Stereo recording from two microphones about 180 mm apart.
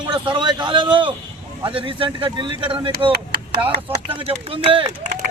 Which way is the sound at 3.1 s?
65° right (ahead or behind).